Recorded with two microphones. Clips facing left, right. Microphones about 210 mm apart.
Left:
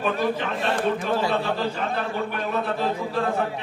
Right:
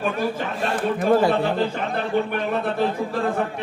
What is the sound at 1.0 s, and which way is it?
Speech, 55° right (ahead or behind).